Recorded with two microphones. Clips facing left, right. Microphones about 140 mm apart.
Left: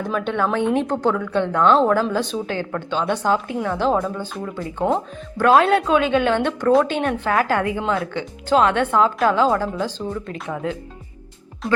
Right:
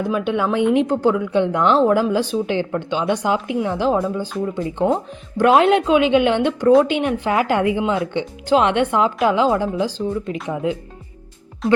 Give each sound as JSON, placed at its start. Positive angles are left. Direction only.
{"t": 0.0, "sound": "a woman's voice", "side_deg": -10}